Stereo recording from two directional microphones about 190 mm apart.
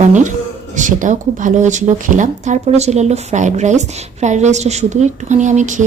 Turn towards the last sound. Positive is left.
turn(degrees=-40)  # may be behind; listen again after turning